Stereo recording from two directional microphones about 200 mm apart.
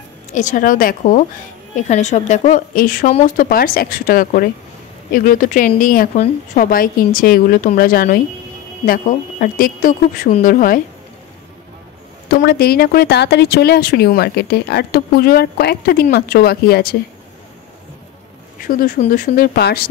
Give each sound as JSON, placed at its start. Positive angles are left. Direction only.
{"t": 0.3, "sound": "a woman's voice", "side_deg": 40}
{"t": 12.3, "sound": "speech", "side_deg": 50}
{"t": 18.7, "sound": "speech", "side_deg": 45}